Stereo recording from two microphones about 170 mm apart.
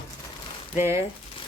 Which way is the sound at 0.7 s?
15° right (ahead or behind).